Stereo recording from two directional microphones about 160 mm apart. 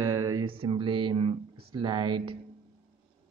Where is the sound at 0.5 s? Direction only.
35° right (ahead or behind).